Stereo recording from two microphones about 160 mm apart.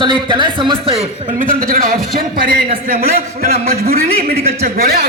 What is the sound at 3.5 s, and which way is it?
Speech, 40° right (ahead or behind).